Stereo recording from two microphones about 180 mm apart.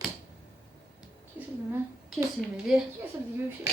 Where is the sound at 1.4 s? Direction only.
10° right (ahead or behind).